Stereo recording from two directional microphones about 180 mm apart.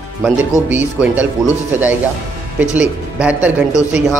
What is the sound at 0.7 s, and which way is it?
Speech, 10° right (ahead or behind).